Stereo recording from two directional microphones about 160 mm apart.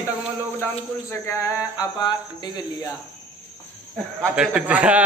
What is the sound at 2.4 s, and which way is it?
Speech, 25° left (ahead or behind).